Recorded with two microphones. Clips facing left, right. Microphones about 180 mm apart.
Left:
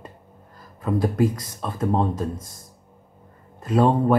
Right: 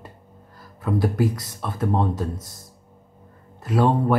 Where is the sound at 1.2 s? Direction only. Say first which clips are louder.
Left 2 dB; 20° left (ahead or behind).